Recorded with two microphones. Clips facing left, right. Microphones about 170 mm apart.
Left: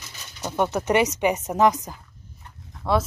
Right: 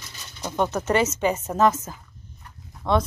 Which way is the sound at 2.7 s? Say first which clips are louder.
Even; 5° left (ahead or behind).